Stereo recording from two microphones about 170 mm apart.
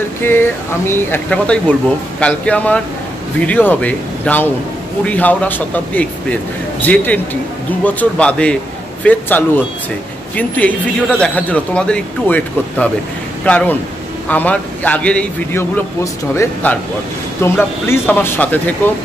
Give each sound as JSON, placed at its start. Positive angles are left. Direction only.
{"t": 0.2, "sound": "speech", "side_deg": 15}